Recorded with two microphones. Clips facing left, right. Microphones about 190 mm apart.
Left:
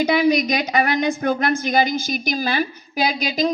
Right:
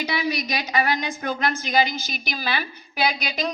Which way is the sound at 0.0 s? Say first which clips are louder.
Left 9 dB; 50° left (ahead or behind).